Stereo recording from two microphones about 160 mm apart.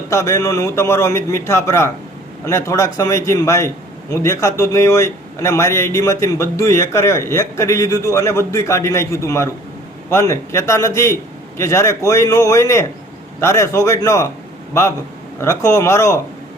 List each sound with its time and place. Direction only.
0.1 s a man's voice: 20° left (ahead or behind)